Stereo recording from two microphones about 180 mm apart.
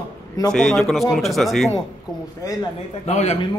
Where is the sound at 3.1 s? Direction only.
40° left (ahead or behind).